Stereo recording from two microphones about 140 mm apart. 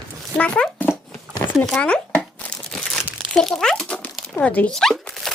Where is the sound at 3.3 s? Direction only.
5° left (ahead or behind).